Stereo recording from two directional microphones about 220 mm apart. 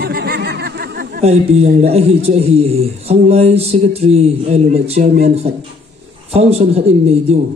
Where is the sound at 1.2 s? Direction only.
30° right (ahead or behind).